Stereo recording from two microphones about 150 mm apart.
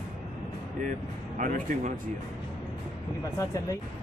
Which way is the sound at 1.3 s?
55° right (ahead or behind).